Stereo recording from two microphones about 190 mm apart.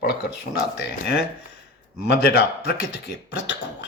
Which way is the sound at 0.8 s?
60° left (ahead or behind).